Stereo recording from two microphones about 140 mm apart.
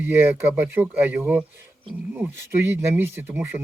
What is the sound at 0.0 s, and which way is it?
Speech, 15° right (ahead or behind).